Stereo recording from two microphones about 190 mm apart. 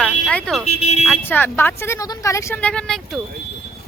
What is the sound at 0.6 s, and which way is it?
Speech, 35° left (ahead or behind).